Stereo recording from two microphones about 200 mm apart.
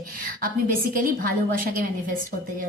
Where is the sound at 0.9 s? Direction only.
45° right (ahead or behind).